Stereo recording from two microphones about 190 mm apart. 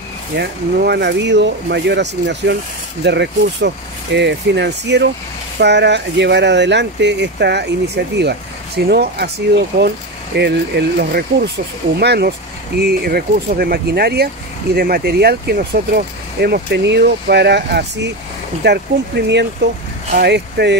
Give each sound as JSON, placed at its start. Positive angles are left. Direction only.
{"t": 0.4, "sound": "speech", "side_deg": -60}